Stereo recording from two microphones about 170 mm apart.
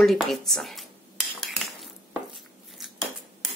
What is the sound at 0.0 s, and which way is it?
Speech, centre (ahead or behind).